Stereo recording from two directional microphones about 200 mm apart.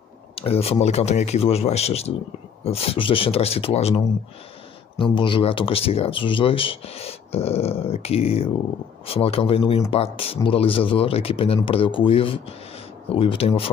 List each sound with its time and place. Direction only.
0.4 s speech: 30° left (ahead or behind)